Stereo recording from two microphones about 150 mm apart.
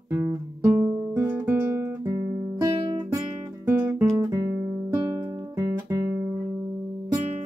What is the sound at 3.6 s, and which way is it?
Guitar, 10° right (ahead or behind).